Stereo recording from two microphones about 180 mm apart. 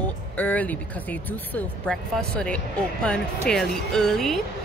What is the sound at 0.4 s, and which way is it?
Speech, 10° left (ahead or behind).